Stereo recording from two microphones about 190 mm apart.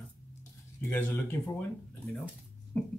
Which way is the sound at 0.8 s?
10° left (ahead or behind).